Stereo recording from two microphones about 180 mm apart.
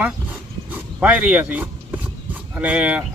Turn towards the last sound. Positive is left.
turn(degrees=-5)  # may be behind; listen again after turning